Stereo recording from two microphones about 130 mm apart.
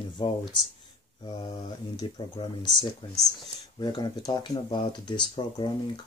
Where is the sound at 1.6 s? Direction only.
30° left (ahead or behind).